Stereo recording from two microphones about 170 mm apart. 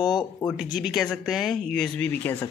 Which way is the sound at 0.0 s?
25° left (ahead or behind).